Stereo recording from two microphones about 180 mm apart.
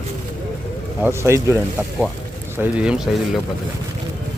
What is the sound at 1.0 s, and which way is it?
Speech, 15° right (ahead or behind).